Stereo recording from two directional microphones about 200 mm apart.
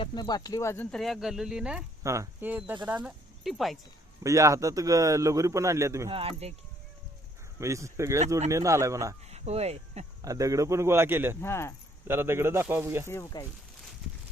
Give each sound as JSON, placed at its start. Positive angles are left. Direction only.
{"t": 0.0, "sound": "a man's voice", "side_deg": 20}
{"t": 4.2, "sound": "a man's voice", "side_deg": -15}
{"t": 6.1, "sound": "speech", "side_deg": -30}
{"t": 7.6, "sound": "a man's voice", "side_deg": -15}
{"t": 9.3, "sound": "speech", "side_deg": -30}
{"t": 10.2, "sound": "a man's voice", "side_deg": -15}
{"t": 11.3, "sound": "speech", "side_deg": 10}
{"t": 12.0, "sound": "a man's voice", "side_deg": -10}
{"t": 13.1, "sound": "speech", "side_deg": 15}